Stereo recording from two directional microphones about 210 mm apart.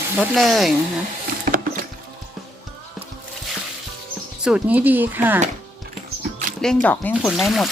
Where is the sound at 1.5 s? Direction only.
40° right (ahead or behind).